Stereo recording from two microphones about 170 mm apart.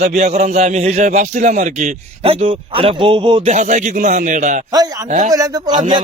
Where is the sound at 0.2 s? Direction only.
40° right (ahead or behind).